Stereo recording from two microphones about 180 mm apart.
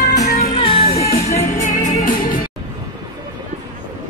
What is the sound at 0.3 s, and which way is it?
Music, 30° left (ahead or behind).